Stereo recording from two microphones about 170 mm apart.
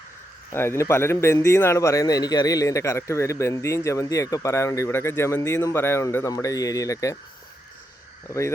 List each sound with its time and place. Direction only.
0.5 s speech: 15° left (ahead or behind)
8.3 s speech: 15° left (ahead or behind)